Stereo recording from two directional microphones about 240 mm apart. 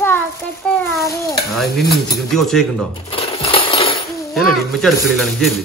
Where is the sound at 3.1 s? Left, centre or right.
Left.